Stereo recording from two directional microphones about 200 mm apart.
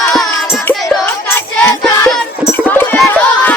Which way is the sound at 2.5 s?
10° left (ahead or behind).